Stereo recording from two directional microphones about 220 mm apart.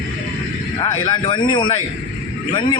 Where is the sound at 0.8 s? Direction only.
20° left (ahead or behind).